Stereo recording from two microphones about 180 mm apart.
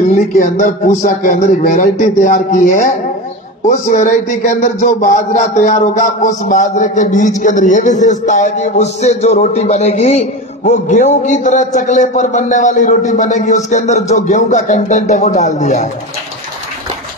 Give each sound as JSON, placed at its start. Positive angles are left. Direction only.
{"t": 0.1, "sound": "a man's voice", "side_deg": 55}
{"t": 3.7, "sound": "a man's voice", "side_deg": 50}
{"t": 5.6, "sound": "a sound", "side_deg": 45}